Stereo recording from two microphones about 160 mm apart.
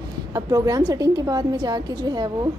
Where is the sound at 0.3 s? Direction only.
20° right (ahead or behind).